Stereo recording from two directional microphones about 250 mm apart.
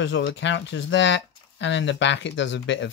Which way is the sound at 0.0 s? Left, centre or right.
Left.